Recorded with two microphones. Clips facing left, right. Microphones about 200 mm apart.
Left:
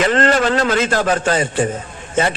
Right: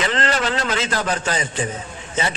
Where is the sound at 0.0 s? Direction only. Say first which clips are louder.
Left 7 dB; 45° left (ahead or behind).